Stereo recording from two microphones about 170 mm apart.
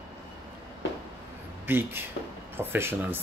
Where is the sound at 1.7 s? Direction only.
15° right (ahead or behind).